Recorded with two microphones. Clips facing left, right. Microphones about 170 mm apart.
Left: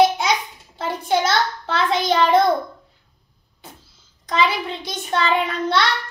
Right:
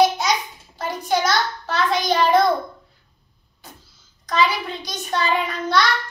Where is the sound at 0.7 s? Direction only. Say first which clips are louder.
Left 1 dB; 25° left (ahead or behind).